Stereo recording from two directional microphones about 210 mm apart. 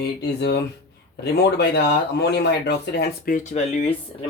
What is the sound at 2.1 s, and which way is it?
Speech, 50° left (ahead or behind).